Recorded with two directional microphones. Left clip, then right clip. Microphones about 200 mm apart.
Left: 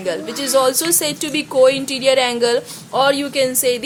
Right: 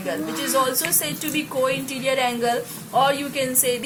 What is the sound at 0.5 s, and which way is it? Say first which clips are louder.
A woman's voice: left 7 dB; 55° left (ahead or behind).